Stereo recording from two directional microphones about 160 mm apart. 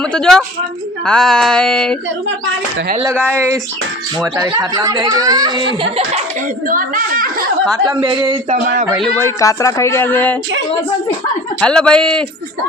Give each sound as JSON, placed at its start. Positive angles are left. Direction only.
{"t": 0.1, "sound": "a sound", "side_deg": 5}
{"t": 3.2, "sound": "speech", "side_deg": -15}
{"t": 5.8, "sound": "speech", "side_deg": -35}
{"t": 6.7, "sound": "a woman's voice", "side_deg": -60}
{"t": 7.9, "sound": "speech", "side_deg": -30}
{"t": 9.1, "sound": "speech", "side_deg": 20}
{"t": 11.6, "sound": "a sound", "side_deg": 5}